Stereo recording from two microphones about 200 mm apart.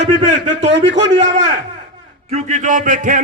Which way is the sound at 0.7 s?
60° right (ahead or behind).